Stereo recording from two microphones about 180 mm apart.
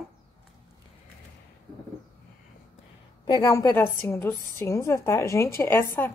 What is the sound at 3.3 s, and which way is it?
A woman's voice, 20° left (ahead or behind).